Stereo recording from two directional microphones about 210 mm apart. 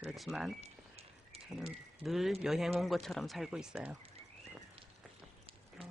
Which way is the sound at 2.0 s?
Centre (ahead or behind).